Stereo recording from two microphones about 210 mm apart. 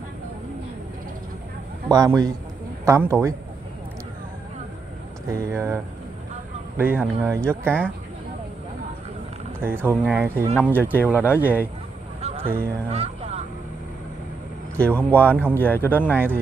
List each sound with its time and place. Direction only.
1.9 s speech: 15° right (ahead or behind)
5.3 s speech: 15° right (ahead or behind)
6.8 s speech: 10° right (ahead or behind)
9.6 s speech: 10° right (ahead or behind)
10.5 s speech: 10° left (ahead or behind)
12.2 s a sound: 30° right (ahead or behind)
12.4 s speech: 45° right (ahead or behind)
12.9 s vehicle: 30° right (ahead or behind)
14.8 s speech: 5° left (ahead or behind)